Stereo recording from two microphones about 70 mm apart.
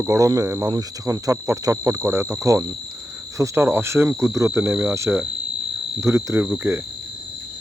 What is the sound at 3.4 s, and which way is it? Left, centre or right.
Speech, right.